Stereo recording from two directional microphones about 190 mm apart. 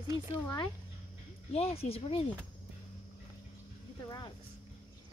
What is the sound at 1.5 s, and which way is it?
Speech, 35° left (ahead or behind).